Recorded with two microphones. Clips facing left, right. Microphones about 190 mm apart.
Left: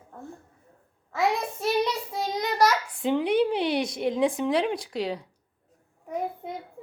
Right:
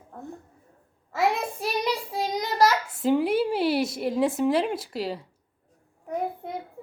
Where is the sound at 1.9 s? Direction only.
30° right (ahead or behind).